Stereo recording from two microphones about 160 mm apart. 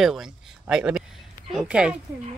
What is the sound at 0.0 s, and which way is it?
Speech, centre (ahead or behind).